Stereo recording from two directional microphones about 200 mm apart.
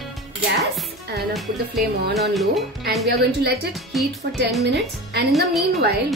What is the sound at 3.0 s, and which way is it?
Speech, 55° right (ahead or behind).